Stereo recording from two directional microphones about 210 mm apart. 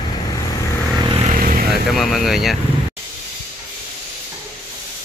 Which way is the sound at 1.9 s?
Centre (ahead or behind).